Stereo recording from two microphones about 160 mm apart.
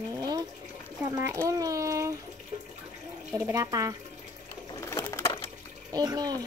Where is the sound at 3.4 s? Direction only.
20° right (ahead or behind).